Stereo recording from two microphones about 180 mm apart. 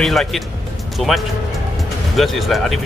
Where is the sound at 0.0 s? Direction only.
Centre (ahead or behind).